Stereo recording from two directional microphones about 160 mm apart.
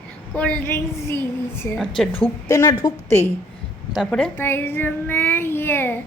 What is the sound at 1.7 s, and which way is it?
Female singing, centre (ahead or behind).